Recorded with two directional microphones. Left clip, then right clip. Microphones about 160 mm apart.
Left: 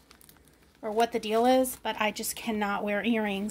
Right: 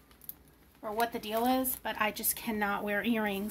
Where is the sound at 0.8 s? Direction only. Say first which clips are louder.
Left 6 dB; 45° left (ahead or behind).